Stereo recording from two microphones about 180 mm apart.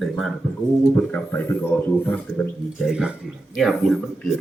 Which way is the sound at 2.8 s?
5° right (ahead or behind).